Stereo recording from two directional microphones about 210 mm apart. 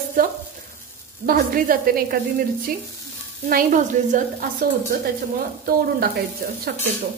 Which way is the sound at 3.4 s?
40° right (ahead or behind).